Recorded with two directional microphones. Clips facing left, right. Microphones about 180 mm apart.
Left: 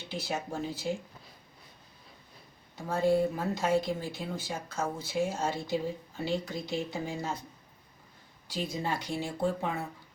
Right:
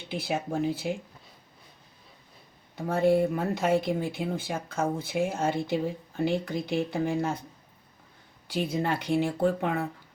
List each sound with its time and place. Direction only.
0.1 s speech: 55° right (ahead or behind)
2.7 s speech: 65° right (ahead or behind)
8.7 s speech: 60° right (ahead or behind)